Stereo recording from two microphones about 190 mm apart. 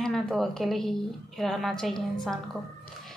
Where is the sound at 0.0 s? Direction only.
Centre (ahead or behind).